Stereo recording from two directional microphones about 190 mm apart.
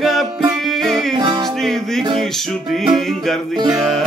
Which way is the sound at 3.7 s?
Centre (ahead or behind).